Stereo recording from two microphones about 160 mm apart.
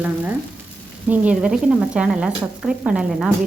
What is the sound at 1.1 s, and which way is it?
A woman's voice, 5° right (ahead or behind).